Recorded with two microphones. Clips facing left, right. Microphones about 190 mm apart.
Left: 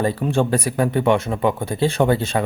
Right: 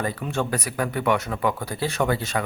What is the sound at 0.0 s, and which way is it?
Speech, 30° left (ahead or behind).